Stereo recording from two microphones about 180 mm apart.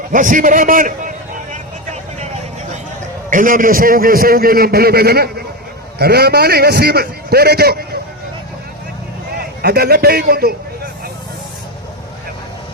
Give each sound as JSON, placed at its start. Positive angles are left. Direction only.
{"t": 0.1, "sound": "a man's voice", "side_deg": -45}
{"t": 3.2, "sound": "a man's voice", "side_deg": -45}
{"t": 9.4, "sound": "a man's voice", "side_deg": -60}